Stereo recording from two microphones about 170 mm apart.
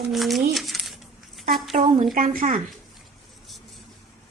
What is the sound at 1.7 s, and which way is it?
Speech, 45° right (ahead or behind).